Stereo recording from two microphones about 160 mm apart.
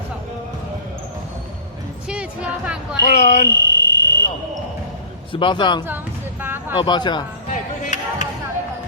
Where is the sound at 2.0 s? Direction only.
5° right (ahead or behind).